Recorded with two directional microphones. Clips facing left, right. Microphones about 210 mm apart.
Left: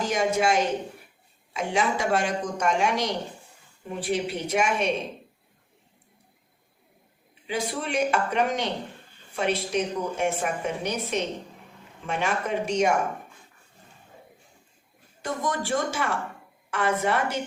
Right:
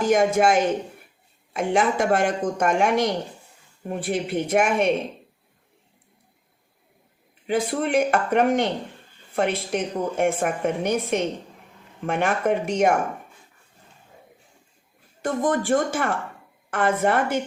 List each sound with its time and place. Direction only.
0.0 s a woman's voice: 50° right (ahead or behind)
7.4 s speech: 55° right (ahead or behind)
15.2 s speech: 50° right (ahead or behind)